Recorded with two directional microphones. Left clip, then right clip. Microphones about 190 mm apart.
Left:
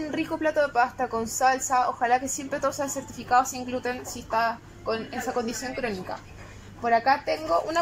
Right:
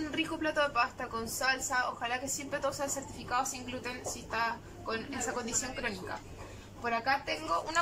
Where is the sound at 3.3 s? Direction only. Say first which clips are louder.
Left 11 dB; 30° left (ahead or behind).